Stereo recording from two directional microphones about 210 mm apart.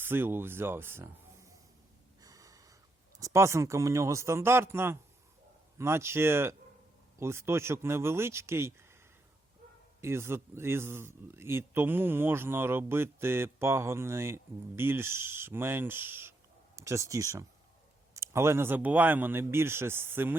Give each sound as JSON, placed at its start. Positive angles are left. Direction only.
{"t": 0.0, "sound": "speech", "side_deg": -10}
{"t": 2.2, "sound": "wheeze", "side_deg": -15}
{"t": 3.2, "sound": "speech", "side_deg": -15}
{"t": 10.0, "sound": "speech", "side_deg": -10}